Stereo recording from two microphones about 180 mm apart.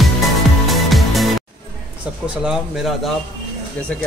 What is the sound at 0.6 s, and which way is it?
Music, centre (ahead or behind).